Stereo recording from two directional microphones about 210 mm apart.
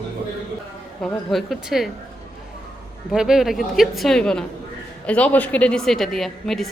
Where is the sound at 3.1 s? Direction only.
5° right (ahead or behind).